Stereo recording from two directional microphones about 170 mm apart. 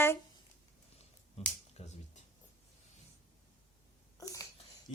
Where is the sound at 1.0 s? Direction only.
40° left (ahead or behind).